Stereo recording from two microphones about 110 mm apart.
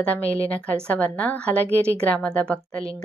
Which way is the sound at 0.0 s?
15° left (ahead or behind).